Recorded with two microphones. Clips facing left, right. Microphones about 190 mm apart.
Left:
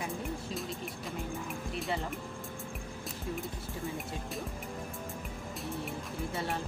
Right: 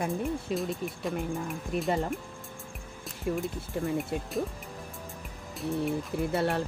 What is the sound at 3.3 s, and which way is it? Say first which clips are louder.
Speech: right 8 dB; 65° right (ahead or behind).